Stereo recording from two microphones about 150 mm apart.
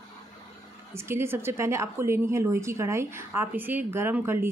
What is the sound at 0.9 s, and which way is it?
Speech, 15° right (ahead or behind).